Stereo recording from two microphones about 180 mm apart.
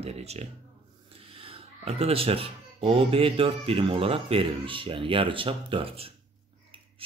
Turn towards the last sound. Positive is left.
turn(degrees=-30)  # may be behind; listen again after turning